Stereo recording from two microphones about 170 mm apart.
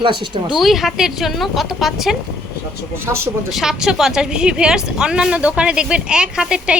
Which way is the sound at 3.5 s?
Centre (ahead or behind).